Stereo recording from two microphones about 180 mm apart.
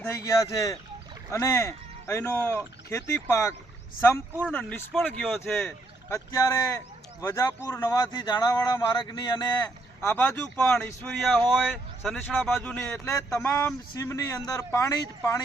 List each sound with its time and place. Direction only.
0.0 s speech: 15° left (ahead or behind)
4.5 s speech: centre (ahead or behind)
6.1 s speech: 15° left (ahead or behind)
9.6 s speech: 10° left (ahead or behind)
13.1 s speech: 15° left (ahead or behind)